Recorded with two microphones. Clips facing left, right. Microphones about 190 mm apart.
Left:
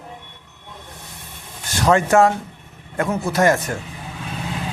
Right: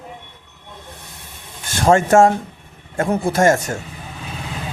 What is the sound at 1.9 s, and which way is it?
Speech, 25° right (ahead or behind).